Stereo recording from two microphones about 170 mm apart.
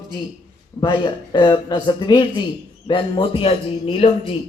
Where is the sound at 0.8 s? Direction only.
25° left (ahead or behind).